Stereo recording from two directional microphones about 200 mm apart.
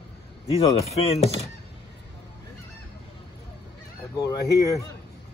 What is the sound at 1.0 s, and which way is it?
Speech, 30° left (ahead or behind).